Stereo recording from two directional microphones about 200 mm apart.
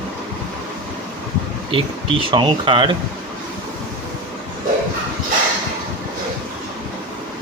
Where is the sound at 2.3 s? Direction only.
25° right (ahead or behind).